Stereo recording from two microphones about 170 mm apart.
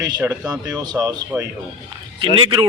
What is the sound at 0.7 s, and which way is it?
Speech, 20° right (ahead or behind).